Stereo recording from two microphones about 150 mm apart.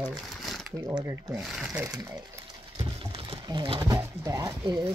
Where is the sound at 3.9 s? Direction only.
20° right (ahead or behind).